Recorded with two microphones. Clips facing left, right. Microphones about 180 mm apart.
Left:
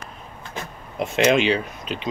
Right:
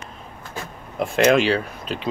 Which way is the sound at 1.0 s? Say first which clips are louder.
Right 1 dB; centre (ahead or behind).